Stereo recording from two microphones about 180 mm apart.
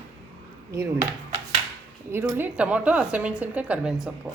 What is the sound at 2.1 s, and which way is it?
Speech, 15° right (ahead or behind).